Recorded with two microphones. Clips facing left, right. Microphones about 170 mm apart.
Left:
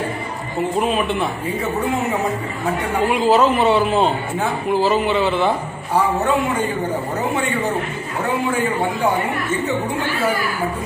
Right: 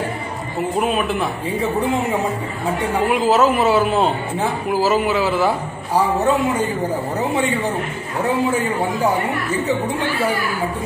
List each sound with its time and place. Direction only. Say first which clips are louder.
0.7 s a man's voice: even; centre (ahead or behind)
1.6 s a man's voice: right 2 dB; 30° right (ahead or behind)
2.9 s a man's voice: left 1 dB; centre (ahead or behind)